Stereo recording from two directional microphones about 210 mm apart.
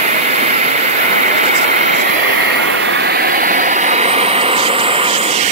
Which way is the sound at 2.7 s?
60° right (ahead or behind).